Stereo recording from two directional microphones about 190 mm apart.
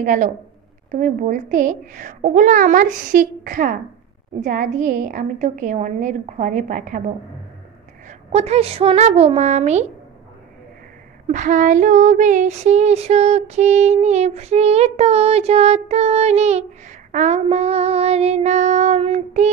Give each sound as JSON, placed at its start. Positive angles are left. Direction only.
{"t": 0.0, "sound": "a child's voice", "side_deg": -45}
{"t": 4.4, "sound": "female singing", "side_deg": -45}
{"t": 8.1, "sound": "female singing", "side_deg": -35}
{"t": 11.2, "sound": "female singing", "side_deg": -40}